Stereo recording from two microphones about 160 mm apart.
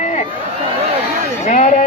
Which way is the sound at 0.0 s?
50° left (ahead or behind).